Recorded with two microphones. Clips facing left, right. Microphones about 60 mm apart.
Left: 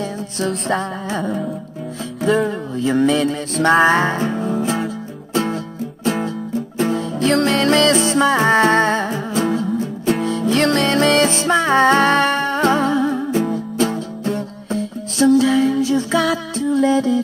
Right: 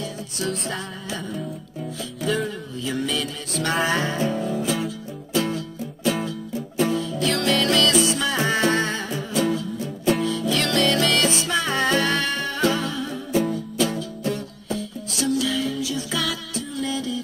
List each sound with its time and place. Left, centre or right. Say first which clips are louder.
0.0 s music: left 6 dB; left
2.3 s music: left 8 dB; left
6.8 s music: left 3 dB; left